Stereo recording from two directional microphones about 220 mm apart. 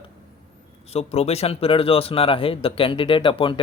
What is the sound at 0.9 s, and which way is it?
Speech, 30° left (ahead or behind).